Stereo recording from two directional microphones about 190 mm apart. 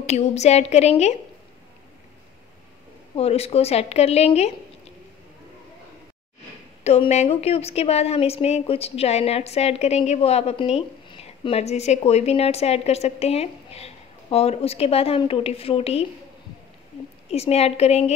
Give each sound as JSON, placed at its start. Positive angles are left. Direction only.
{"t": 0.0, "sound": "a woman's voice", "side_deg": 35}
{"t": 3.2, "sound": "a woman's voice", "side_deg": 35}
{"t": 6.8, "sound": "a woman's voice", "side_deg": 35}
{"t": 17.3, "sound": "a woman's voice", "side_deg": 35}